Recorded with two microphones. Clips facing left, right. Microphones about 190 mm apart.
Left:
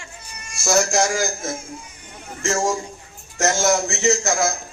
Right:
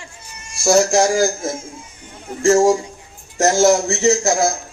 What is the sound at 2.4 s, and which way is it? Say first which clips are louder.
A man's voice: right 9 dB; 35° right (ahead or behind).